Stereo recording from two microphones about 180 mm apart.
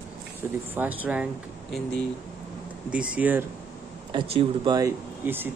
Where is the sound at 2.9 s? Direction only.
5° right (ahead or behind).